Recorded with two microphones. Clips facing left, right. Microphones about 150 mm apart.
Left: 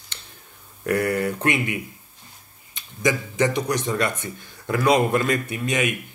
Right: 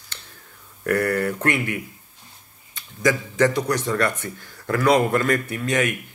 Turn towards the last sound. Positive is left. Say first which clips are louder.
# right 1 dB
turn(degrees=15)  # may be behind; listen again after turning